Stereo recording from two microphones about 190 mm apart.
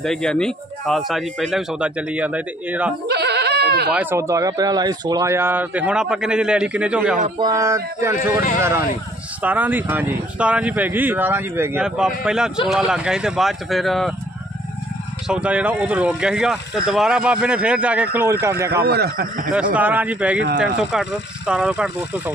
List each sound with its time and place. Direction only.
0.0 s speech: 5° left (ahead or behind)
3.1 s goat: 60° right (ahead or behind)
3.9 s speech: 10° right (ahead or behind)
7.3 s speech: 20° right (ahead or behind)
9.4 s speech: 10° right (ahead or behind)
15.2 s speech: 5° right (ahead or behind)
18.7 s speech: 55° right (ahead or behind)
19.7 s speech: 10° right (ahead or behind)
20.3 s speech: 65° right (ahead or behind)
20.6 s speech: 5° right (ahead or behind)